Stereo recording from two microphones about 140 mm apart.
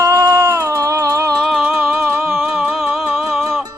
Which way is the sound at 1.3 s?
Centre (ahead or behind).